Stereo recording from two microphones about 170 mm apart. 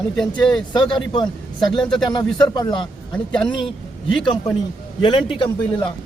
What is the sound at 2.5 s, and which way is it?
Speech, 25° left (ahead or behind).